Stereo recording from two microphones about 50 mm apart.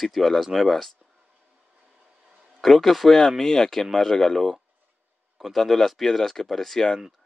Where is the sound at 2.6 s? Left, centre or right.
Centre.